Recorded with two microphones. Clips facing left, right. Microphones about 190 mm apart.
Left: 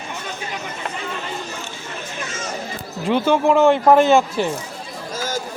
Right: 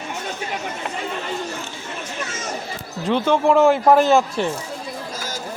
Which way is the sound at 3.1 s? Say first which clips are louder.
Left 1 dB; 5° left (ahead or behind).